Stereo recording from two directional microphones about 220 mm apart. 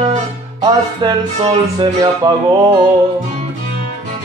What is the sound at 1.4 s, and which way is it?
Music, 30° right (ahead or behind).